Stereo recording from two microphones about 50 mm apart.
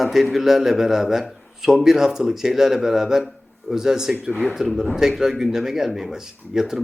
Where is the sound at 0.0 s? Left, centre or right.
Centre.